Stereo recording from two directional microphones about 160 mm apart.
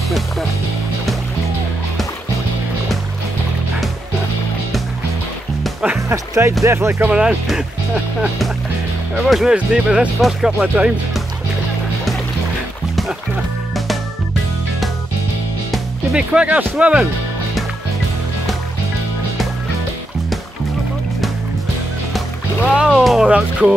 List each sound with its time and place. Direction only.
5.6 s music: 5° right (ahead or behind)
5.9 s music: 20° right (ahead or behind)
6.6 s speech: 15° right (ahead or behind)
7.1 s speech: 5° right (ahead or behind)
9.2 s speech: centre (ahead or behind)
15.7 s speech: 5° right (ahead or behind)
22.8 s speech: 5° right (ahead or behind)